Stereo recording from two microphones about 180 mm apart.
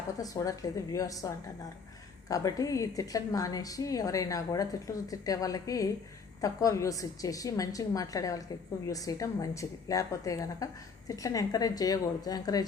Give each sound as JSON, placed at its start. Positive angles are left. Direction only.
{"t": 0.2, "sound": "a woman's voice", "side_deg": 20}
{"t": 2.3, "sound": "a woman's voice", "side_deg": 20}